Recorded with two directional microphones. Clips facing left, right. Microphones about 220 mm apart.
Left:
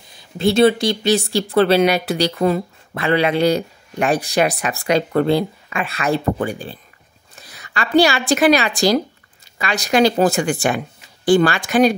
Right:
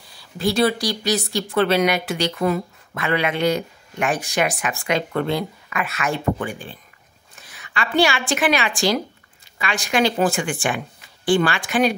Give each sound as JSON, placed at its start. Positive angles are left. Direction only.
{"t": 0.1, "sound": "a woman's voice", "side_deg": 25}